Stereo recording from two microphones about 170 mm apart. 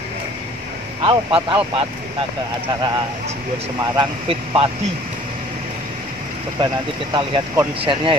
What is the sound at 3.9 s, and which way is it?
Speech, 30° right (ahead or behind).